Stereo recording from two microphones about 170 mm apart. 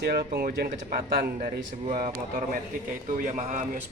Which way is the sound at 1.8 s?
45° right (ahead or behind).